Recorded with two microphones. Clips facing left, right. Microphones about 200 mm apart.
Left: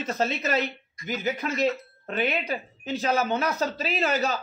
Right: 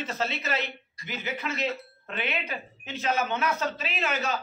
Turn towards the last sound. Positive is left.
turn(degrees=35)  # may be behind; listen again after turning